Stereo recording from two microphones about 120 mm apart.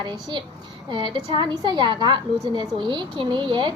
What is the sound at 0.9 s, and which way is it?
A woman's voice, 45° right (ahead or behind).